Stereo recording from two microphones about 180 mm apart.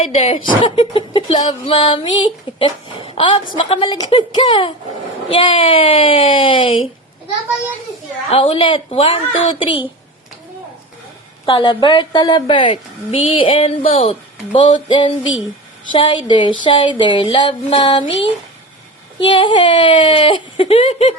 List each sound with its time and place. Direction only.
0.0 s speech: 35° left (ahead or behind)
8.3 s a woman's voice: 30° left (ahead or behind)
11.4 s speech: 25° left (ahead or behind)
19.3 s speech: 25° left (ahead or behind)